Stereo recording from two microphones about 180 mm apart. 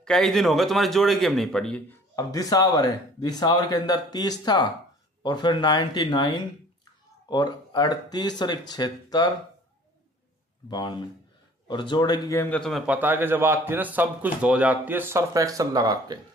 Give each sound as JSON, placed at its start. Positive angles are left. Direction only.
{"t": 0.0, "sound": "speech", "side_deg": 0}
{"t": 2.1, "sound": "speech", "side_deg": 20}
{"t": 10.7, "sound": "a man's voice", "side_deg": 25}